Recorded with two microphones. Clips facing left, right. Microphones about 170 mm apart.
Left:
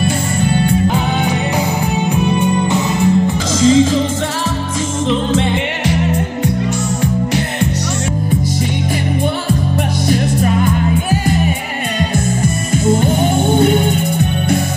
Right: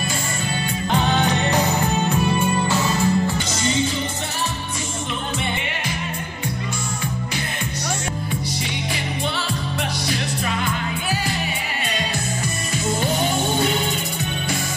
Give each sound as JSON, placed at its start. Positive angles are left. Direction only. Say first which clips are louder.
{"t": 0.0, "sound": "music", "louder": "left 10 dB", "side_deg": 60}
{"t": 0.9, "sound": "music", "louder": "left 3 dB", "side_deg": 10}
{"t": 3.6, "sound": "music", "louder": "left 13 dB", "side_deg": 90}
{"t": 5.3, "sound": "music", "louder": "left 11 dB", "side_deg": 90}
{"t": 10.0, "sound": "music", "louder": "left 10 dB", "side_deg": 45}